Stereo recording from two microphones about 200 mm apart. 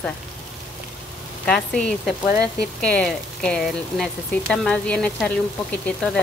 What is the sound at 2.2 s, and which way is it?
Speech, 15° right (ahead or behind).